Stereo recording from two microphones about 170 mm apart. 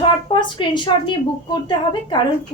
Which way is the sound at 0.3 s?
25° left (ahead or behind).